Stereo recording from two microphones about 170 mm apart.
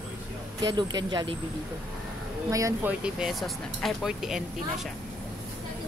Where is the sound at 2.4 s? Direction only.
20° right (ahead or behind).